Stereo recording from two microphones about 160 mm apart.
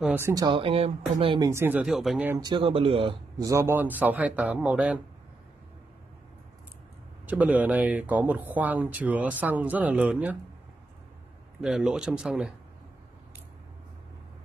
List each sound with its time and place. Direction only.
0.0 s speech: 10° right (ahead or behind)
0.3 s speech: 25° right (ahead or behind)
1.4 s speech: 15° right (ahead or behind)
2.3 s speech: 25° right (ahead or behind)
3.3 s speech: 20° right (ahead or behind)
7.2 s speech: 10° right (ahead or behind)
11.6 s speech: 5° right (ahead or behind)